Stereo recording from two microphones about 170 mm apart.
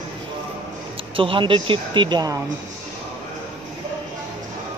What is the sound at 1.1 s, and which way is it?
A man's voice, 30° right (ahead or behind).